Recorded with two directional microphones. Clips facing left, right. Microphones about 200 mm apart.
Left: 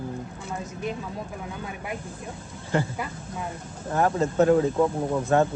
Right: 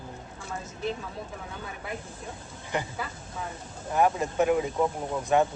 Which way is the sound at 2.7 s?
15° right (ahead or behind).